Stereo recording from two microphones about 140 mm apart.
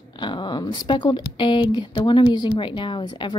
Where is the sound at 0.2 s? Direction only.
35° left (ahead or behind).